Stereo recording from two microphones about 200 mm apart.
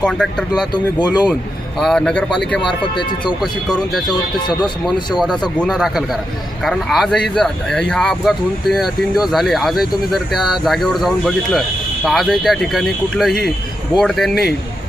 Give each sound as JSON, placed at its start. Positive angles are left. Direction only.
{"t": 0.0, "sound": "speech", "side_deg": 5}
{"t": 1.8, "sound": "speech", "side_deg": 5}
{"t": 2.6, "sound": "speech", "side_deg": 25}
{"t": 4.4, "sound": "speech", "side_deg": 20}
{"t": 5.5, "sound": "speech", "side_deg": 0}